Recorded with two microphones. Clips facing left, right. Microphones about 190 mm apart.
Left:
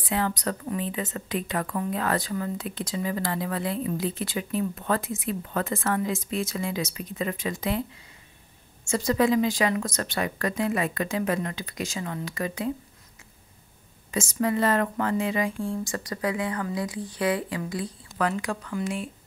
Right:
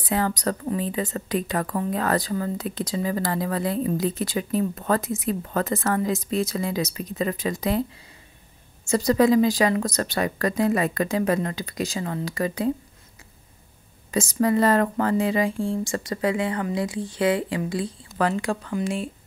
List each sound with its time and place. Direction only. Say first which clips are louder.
0.0 s a woman's voice: right 3 dB; 40° right (ahead or behind)
8.8 s a woman's voice: right 4 dB; 35° right (ahead or behind)
14.1 s speech: right 4 dB; 35° right (ahead or behind)